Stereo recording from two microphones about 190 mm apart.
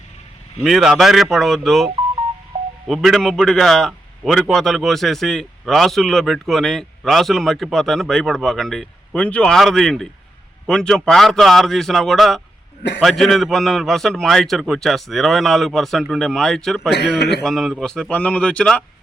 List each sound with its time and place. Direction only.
0.6 s a man's voice: centre (ahead or behind)
16.9 s a man's voice: 60° left (ahead or behind)
17.4 s a man's voice: centre (ahead or behind)